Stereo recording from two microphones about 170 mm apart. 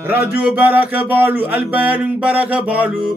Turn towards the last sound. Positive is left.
turn(degrees=-5)  # may be behind; listen again after turning